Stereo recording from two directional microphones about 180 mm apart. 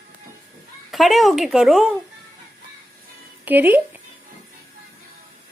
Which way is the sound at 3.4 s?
10° right (ahead or behind).